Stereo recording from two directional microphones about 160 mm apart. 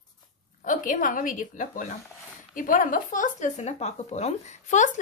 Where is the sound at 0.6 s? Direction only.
55° left (ahead or behind).